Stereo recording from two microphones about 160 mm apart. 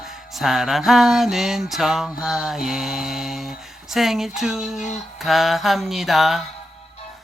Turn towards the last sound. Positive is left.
turn(degrees=0)  # may be behind; listen again after turning